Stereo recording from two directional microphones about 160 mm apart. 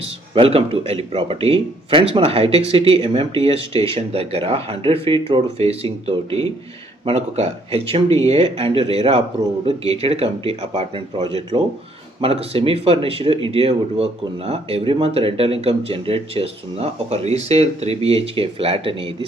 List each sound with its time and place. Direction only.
0.0 s speech: 35° right (ahead or behind)